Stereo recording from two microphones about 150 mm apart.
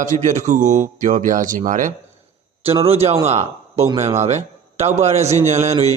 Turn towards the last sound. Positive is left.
turn(degrees=-50)  # may be behind; listen again after turning